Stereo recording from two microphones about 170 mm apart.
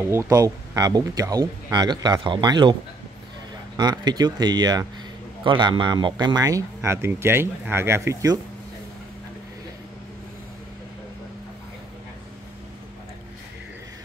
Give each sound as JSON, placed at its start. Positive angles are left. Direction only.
{"t": 0.1, "sound": "speech", "side_deg": -15}
{"t": 3.7, "sound": "speech", "side_deg": -25}